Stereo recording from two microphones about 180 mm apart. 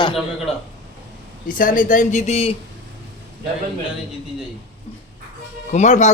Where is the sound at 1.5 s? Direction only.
50° left (ahead or behind).